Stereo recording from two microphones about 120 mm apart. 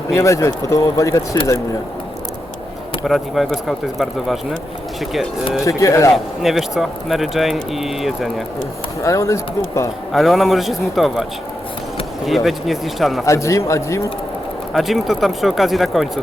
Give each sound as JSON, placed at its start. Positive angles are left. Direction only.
{"t": 0.1, "sound": "speech", "side_deg": 25}
{"t": 3.0, "sound": "speech", "side_deg": 0}
{"t": 5.6, "sound": "speech", "side_deg": 25}
{"t": 6.4, "sound": "speech", "side_deg": 0}
{"t": 9.0, "sound": "speech", "side_deg": 25}
{"t": 10.1, "sound": "speech", "side_deg": 0}
{"t": 13.2, "sound": "speech", "side_deg": 25}
{"t": 14.7, "sound": "speech", "side_deg": 0}